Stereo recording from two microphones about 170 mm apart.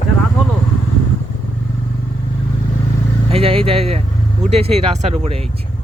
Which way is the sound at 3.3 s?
35° right (ahead or behind).